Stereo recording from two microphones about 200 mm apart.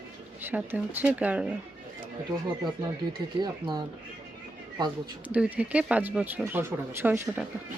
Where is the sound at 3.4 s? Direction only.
20° right (ahead or behind).